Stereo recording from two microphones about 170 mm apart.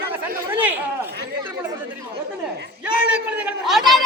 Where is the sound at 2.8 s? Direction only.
5° right (ahead or behind).